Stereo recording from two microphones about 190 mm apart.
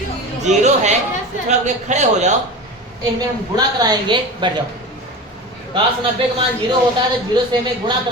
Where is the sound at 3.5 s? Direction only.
20° right (ahead or behind).